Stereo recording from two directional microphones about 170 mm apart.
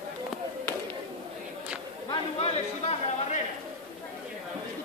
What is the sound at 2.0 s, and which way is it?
Chatter, 35° left (ahead or behind).